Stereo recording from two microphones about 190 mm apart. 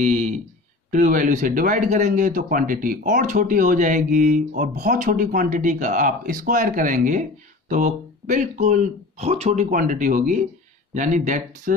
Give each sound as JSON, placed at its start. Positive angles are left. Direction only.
{"t": 0.0, "sound": "speech", "side_deg": -40}